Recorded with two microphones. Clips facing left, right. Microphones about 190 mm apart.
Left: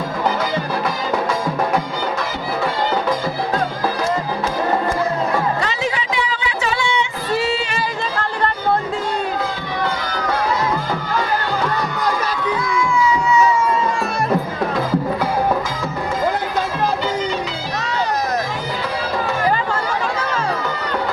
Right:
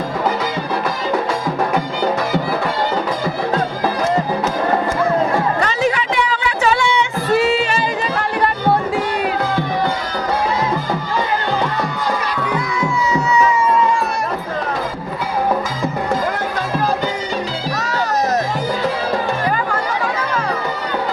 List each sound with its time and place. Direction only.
5.6 s a sound: 55° right (ahead or behind)
7.3 s music: 55° right (ahead or behind)
13.0 s music: 40° right (ahead or behind)